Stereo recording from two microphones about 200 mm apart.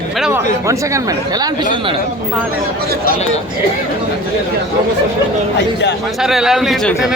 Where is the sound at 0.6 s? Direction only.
15° right (ahead or behind).